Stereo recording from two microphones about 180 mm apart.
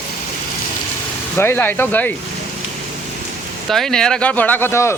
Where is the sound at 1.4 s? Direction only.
10° left (ahead or behind).